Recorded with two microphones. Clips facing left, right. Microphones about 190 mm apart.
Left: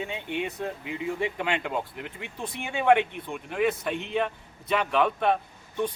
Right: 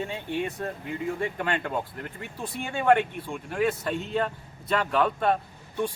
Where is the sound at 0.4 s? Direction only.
5° left (ahead or behind).